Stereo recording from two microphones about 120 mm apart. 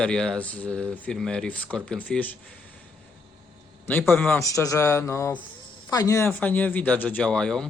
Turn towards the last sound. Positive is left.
turn(degrees=5)  # may be behind; listen again after turning